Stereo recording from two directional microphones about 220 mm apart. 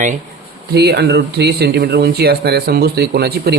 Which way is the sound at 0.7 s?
45° right (ahead or behind).